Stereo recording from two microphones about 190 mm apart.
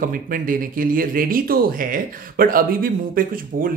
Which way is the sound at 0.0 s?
45° right (ahead or behind).